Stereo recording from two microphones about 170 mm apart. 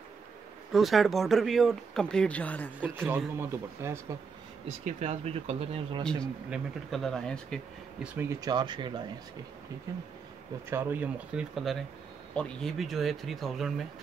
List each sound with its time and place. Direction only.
0.7 s speech: centre (ahead or behind)
2.8 s speech: 10° right (ahead or behind)
4.8 s speech: 40° right (ahead or behind)
6.5 s speech: centre (ahead or behind)
8.1 s speech: 15° right (ahead or behind); by 13.8 s centre (ahead or behind)